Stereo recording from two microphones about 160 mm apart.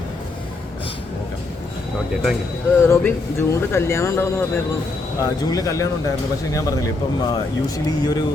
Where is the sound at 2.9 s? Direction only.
15° left (ahead or behind).